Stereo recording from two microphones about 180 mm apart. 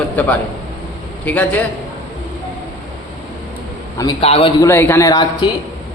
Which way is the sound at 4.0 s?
30° left (ahead or behind).